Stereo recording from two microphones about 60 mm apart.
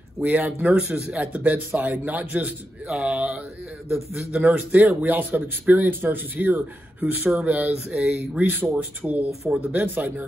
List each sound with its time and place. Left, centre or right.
0.2 s speech: right
1.2 s speech: right
8.5 s speech: right